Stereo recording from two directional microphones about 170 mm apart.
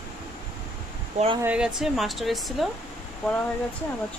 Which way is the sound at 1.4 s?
5° right (ahead or behind).